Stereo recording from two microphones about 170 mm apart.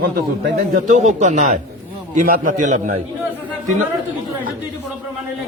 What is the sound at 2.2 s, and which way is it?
Speech, 55° right (ahead or behind).